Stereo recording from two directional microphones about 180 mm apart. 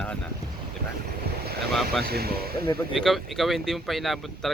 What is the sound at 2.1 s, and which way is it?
Speech, 60° right (ahead or behind).